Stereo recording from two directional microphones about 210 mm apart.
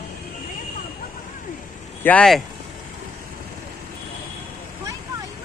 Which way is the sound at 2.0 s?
5° left (ahead or behind).